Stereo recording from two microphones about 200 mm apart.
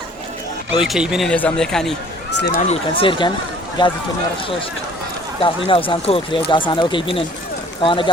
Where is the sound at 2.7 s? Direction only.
25° left (ahead or behind).